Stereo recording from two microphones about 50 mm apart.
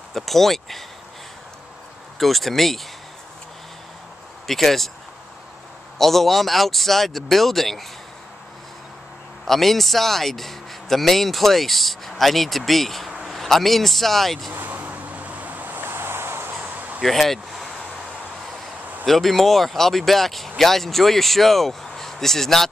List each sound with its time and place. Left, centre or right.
0.1 s speech: centre
2.1 s speech: centre
4.5 s speech: centre
5.9 s speech: centre
9.5 s speech: centre
14.5 s vehicle: right
16.6 s a sound: right
17.0 s speech: centre
19.0 s speech: centre